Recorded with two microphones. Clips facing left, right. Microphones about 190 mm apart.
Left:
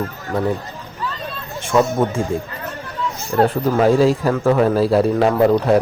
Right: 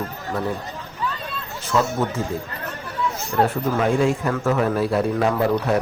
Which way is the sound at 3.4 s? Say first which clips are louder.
Left 6 dB; 35° left (ahead or behind).